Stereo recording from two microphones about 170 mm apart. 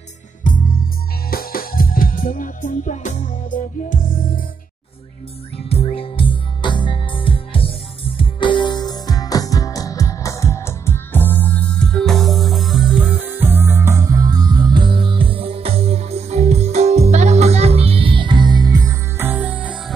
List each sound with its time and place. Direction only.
1.3 s music: 60° left (ahead or behind)
5.9 s music: 30° left (ahead or behind); by 19.8 s 10° right (ahead or behind)